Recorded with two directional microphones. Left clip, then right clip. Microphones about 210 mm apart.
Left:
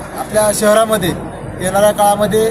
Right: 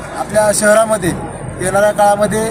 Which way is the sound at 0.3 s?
5° left (ahead or behind).